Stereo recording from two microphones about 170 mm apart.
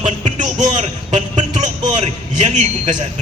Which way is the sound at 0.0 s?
45° right (ahead or behind).